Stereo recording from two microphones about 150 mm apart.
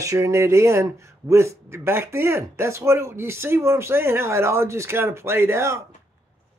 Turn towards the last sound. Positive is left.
turn(degrees=-20)  # may be behind; listen again after turning